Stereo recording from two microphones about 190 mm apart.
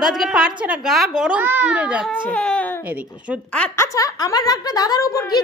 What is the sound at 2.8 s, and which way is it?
Speech, 5° right (ahead or behind).